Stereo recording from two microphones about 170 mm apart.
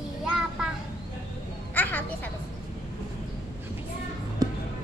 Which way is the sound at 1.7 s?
10° left (ahead or behind).